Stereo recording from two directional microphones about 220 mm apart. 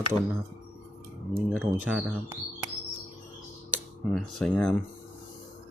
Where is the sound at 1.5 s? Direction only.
Centre (ahead or behind).